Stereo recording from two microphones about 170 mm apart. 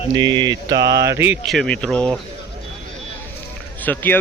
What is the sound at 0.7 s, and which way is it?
Mantra, 85° right.